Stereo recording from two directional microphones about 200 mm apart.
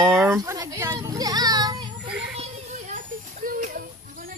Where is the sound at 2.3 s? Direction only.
35° right (ahead or behind).